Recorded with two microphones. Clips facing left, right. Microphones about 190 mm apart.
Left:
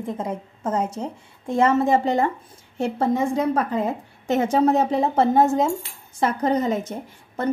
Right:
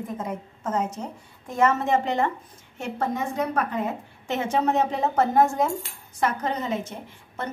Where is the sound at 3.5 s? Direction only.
30° left (ahead or behind).